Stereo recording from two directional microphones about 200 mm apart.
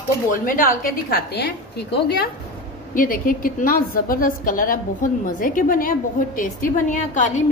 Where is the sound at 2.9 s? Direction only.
45° left (ahead or behind).